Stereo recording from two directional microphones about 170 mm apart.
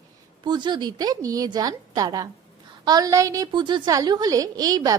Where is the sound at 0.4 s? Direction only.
25° right (ahead or behind).